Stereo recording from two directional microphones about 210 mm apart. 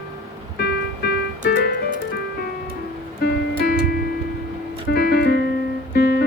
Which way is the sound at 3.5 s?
50° left (ahead or behind).